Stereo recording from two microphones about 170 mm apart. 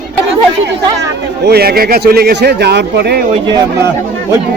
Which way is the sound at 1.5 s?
65° right (ahead or behind).